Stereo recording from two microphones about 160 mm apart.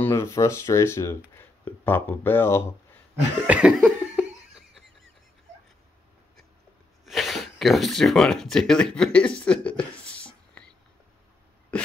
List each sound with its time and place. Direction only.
0.0 s speech: 15° left (ahead or behind)
3.4 s cough: 10° right (ahead or behind)
7.1 s speech: centre (ahead or behind)
11.7 s a sound: 5° left (ahead or behind)